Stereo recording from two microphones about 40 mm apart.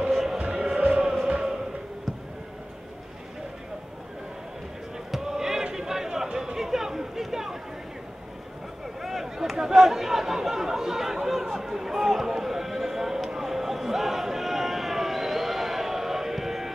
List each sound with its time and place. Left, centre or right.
0.1 s music: centre
0.7 s music: right
5.1 s a sound: centre
5.8 s chatter: centre
9.0 s chatter: centre
11.5 s a sound: centre